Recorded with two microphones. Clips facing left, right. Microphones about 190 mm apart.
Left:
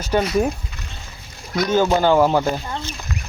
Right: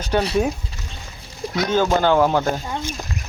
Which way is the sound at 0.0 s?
10° left (ahead or behind).